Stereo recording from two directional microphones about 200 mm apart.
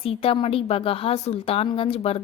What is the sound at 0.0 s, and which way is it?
A woman's voice, 25° left (ahead or behind).